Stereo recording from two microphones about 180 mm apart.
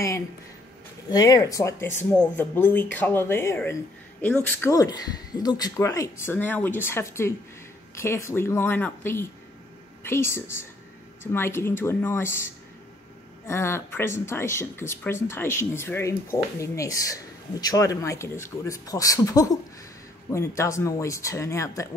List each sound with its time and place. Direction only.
1.1 s speech: 20° left (ahead or behind)